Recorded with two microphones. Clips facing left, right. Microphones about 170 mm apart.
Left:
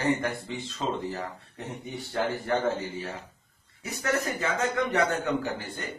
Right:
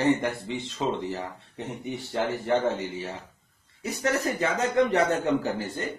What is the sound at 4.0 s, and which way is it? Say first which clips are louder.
Speech: right 2 dB; 35° right (ahead or behind).